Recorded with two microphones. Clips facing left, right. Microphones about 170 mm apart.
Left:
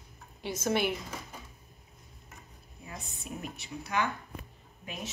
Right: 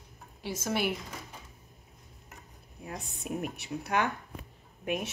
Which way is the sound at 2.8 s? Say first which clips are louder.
Right 5 dB; 60° right (ahead or behind).